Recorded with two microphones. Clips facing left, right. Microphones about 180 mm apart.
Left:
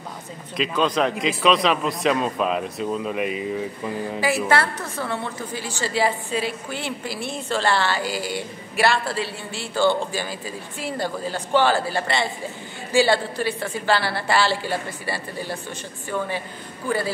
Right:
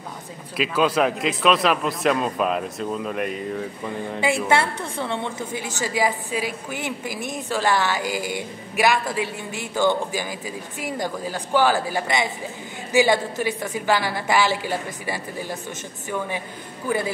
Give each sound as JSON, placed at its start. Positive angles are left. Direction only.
{"t": 0.6, "sound": "speech", "side_deg": -5}
{"t": 4.5, "sound": "a woman's voice", "side_deg": -25}